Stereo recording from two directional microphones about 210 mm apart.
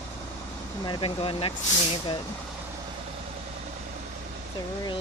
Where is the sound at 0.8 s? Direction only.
25° left (ahead or behind).